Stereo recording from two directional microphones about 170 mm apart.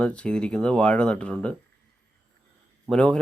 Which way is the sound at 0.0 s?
5° left (ahead or behind).